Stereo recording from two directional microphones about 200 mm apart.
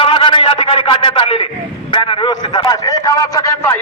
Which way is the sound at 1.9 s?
25° left (ahead or behind).